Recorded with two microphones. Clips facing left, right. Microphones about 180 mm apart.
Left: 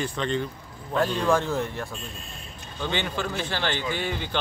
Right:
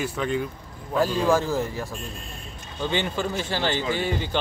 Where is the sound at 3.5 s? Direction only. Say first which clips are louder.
Right 4 dB; 10° right (ahead or behind).